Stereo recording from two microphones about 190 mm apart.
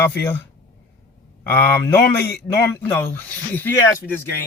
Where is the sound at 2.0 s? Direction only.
55° left (ahead or behind).